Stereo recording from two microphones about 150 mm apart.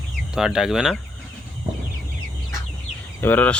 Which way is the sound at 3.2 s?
10° left (ahead or behind).